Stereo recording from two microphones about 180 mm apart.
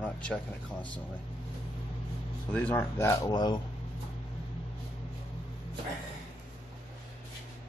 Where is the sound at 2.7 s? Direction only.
15° left (ahead or behind).